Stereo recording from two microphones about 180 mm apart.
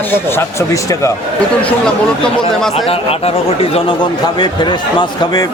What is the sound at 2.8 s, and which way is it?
A man's voice, 30° left (ahead or behind).